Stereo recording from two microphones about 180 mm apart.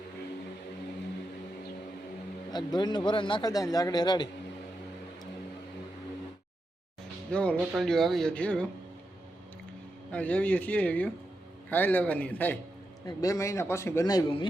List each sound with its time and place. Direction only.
2.5 s a man's voice: 25° left (ahead or behind)
7.3 s a man's voice: 5° left (ahead or behind)
10.1 s a man's voice: 5° left (ahead or behind); by 14.4 s 25° left (ahead or behind)